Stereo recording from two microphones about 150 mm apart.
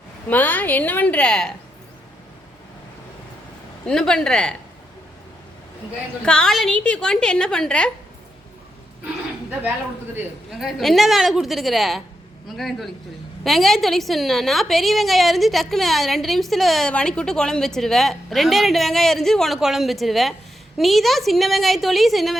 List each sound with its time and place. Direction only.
0.3 s a woman's voice: 10° left (ahead or behind)
3.8 s a woman's voice: 5° left (ahead or behind)
6.2 s a woman's voice: 5° left (ahead or behind)
9.0 s a sound: 10° right (ahead or behind)
10.6 s a woman's voice: centre (ahead or behind)